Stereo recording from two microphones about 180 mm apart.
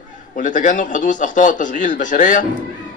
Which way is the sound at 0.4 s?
45° left (ahead or behind).